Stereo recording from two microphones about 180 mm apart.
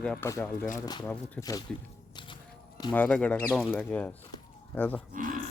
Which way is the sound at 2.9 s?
10° left (ahead or behind).